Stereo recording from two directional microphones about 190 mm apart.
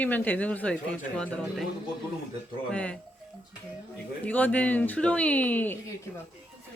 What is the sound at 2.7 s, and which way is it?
Speech, 5° left (ahead or behind).